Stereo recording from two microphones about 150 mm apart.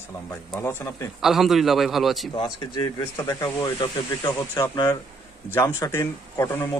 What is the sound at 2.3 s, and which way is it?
Speech, 30° left (ahead or behind).